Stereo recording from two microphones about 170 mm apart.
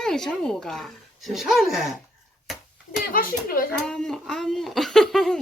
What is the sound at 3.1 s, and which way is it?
Speech, 60° left (ahead or behind).